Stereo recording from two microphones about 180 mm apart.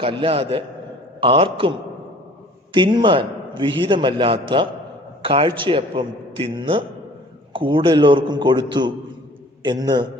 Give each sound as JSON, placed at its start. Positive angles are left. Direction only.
{"t": 0.0, "sound": "a man's voice", "side_deg": -30}
{"t": 2.7, "sound": "a man's voice", "side_deg": -25}